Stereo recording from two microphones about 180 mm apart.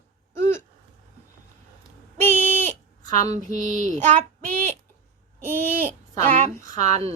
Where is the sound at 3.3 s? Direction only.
45° right (ahead or behind).